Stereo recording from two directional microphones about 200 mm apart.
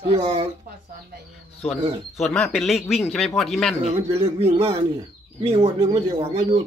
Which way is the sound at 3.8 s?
30° right (ahead or behind).